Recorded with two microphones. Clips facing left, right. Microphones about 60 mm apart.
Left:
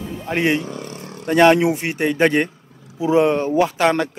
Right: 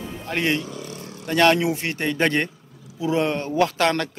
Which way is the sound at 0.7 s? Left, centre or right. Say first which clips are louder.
Left 3 dB; left.